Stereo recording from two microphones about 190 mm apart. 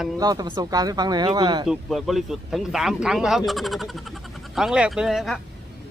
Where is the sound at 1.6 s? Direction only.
Centre (ahead or behind).